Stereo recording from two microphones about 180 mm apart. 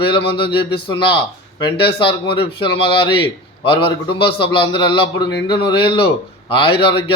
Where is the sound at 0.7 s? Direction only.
30° left (ahead or behind).